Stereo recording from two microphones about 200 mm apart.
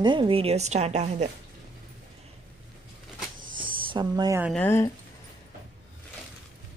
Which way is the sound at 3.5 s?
25° right (ahead or behind).